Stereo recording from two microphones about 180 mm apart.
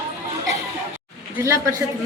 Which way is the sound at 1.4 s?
15° right (ahead or behind).